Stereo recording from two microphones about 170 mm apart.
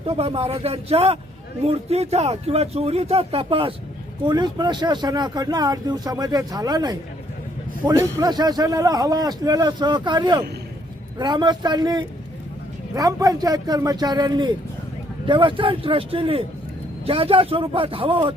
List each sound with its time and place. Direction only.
0.0 s speech: 35° right (ahead or behind)